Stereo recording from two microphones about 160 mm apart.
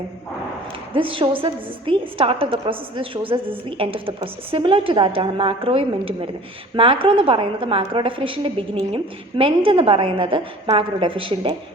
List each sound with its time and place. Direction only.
0.9 s a woman's voice: 30° right (ahead or behind)